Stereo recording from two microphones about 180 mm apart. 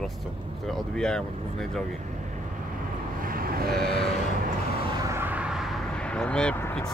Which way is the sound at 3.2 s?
55° right (ahead or behind).